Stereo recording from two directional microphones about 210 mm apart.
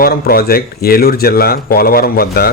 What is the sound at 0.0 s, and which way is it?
Speech, 45° left (ahead or behind).